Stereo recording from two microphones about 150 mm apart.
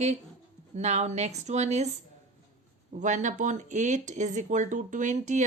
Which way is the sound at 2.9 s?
55° right (ahead or behind).